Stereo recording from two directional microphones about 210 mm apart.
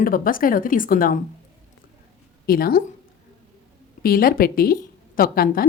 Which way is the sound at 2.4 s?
45° left (ahead or behind).